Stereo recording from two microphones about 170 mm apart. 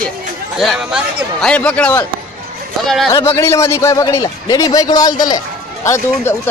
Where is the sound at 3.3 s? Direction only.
15° left (ahead or behind).